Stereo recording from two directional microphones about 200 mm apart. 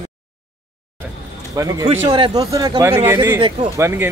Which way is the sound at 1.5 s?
15° right (ahead or behind).